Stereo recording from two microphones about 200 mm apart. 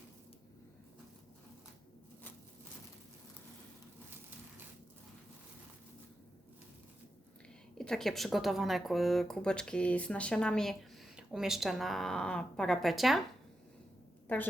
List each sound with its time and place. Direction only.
7.8 s speech: centre (ahead or behind)